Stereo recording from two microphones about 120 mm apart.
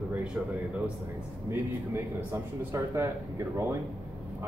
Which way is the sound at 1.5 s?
20° right (ahead or behind).